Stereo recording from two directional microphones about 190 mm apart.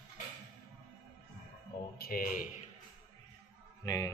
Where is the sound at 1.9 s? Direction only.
50° left (ahead or behind).